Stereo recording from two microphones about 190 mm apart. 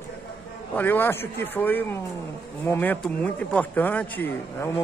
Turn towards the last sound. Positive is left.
turn(degrees=10)  # may be behind; listen again after turning